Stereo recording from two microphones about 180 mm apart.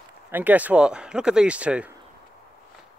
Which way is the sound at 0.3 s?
10° right (ahead or behind).